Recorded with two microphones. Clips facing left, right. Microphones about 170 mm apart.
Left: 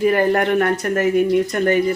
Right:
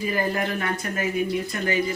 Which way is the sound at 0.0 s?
65° left (ahead or behind).